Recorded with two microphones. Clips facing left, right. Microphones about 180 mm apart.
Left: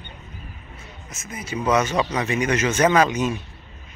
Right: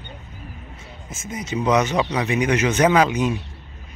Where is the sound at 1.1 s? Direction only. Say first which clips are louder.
Right 4 dB; 25° right (ahead or behind).